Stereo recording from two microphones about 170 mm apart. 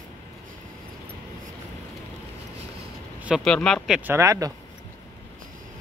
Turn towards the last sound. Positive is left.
turn(degrees=-20)  # may be behind; listen again after turning